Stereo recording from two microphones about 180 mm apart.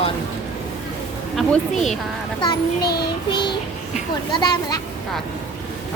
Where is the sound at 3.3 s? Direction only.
25° left (ahead or behind).